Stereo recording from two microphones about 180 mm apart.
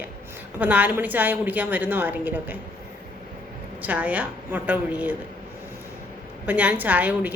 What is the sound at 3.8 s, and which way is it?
Speech, 10° right (ahead or behind).